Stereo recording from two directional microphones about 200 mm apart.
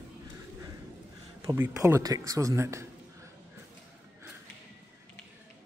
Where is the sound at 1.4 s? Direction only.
15° right (ahead or behind).